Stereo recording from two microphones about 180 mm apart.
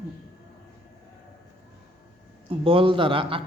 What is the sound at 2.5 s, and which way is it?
Speech, 30° right (ahead or behind).